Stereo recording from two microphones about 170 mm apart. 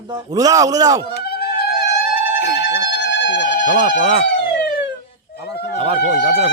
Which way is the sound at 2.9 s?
90° left.